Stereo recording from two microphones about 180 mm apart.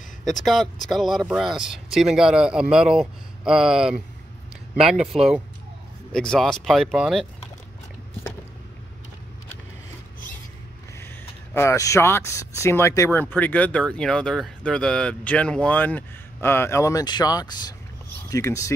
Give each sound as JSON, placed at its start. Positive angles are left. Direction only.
{"t": 0.2, "sound": "speech", "side_deg": 0}
{"t": 11.0, "sound": "speech", "side_deg": 15}